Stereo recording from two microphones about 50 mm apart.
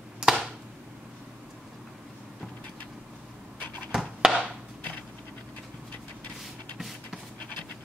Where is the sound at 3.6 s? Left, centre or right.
Left.